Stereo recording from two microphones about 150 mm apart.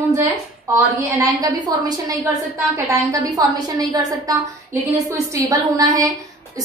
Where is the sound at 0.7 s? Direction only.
20° right (ahead or behind).